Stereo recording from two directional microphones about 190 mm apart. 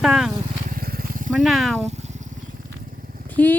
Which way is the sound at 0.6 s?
50° right (ahead or behind).